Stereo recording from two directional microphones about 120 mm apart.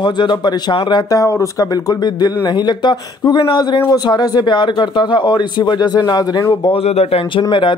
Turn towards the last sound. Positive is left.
turn(degrees=55)  # may be behind; listen again after turning